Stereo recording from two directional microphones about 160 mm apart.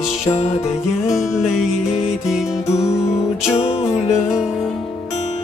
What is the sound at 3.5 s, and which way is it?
Music, 40° left (ahead or behind).